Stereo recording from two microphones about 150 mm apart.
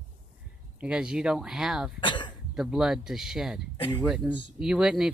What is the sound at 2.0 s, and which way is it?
Speech, 30° left (ahead or behind).